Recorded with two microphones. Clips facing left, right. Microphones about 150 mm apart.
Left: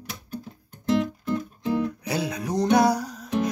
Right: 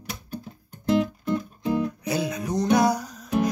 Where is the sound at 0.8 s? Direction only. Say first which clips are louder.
Right 1 dB; centre (ahead or behind).